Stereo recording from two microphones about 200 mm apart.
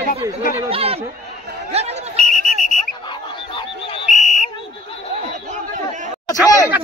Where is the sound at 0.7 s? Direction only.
30° right (ahead or behind).